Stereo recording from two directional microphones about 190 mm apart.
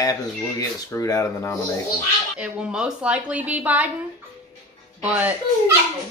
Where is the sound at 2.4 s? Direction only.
5° right (ahead or behind).